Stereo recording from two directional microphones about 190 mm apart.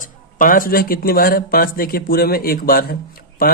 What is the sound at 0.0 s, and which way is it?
Speech, 45° left (ahead or behind).